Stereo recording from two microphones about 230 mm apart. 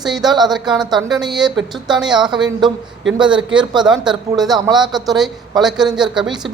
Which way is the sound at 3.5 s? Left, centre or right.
Centre.